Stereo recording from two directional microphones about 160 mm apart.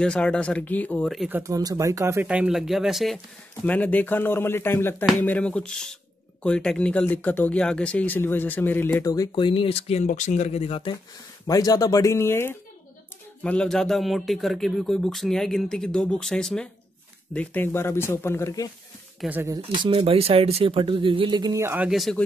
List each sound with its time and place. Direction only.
0.0 s speech: 5° left (ahead or behind)
1.3 s speech: 20° right (ahead or behind)
2.2 s speech: 5° right (ahead or behind)
3.6 s speech: 10° left (ahead or behind); by 11.0 s 35° left (ahead or behind)
11.4 s speech: 20° left (ahead or behind)
19.2 s speech: 10° right (ahead or behind)
19.5 s speech: 30° right (ahead or behind); by 22.2 s centre (ahead or behind)